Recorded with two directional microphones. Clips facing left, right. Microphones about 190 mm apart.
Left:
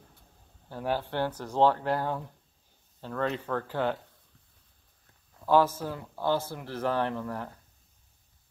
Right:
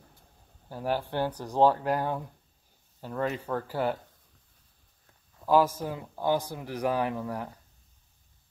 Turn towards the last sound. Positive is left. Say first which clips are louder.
# right 1 dB
turn(degrees=-10)  # may be behind; listen again after turning